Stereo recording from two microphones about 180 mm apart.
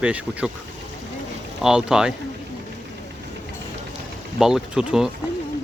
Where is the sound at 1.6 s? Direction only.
5° right (ahead or behind).